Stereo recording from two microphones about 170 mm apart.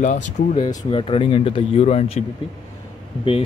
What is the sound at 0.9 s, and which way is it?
Speech, 35° left (ahead or behind).